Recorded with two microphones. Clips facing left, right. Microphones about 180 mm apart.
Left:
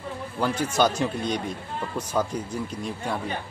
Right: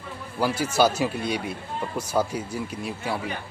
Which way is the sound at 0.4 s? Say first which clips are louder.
Right 1 dB; 10° right (ahead or behind).